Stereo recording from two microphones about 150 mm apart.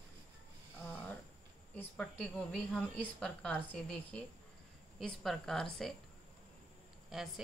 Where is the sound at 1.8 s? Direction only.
5° left (ahead or behind).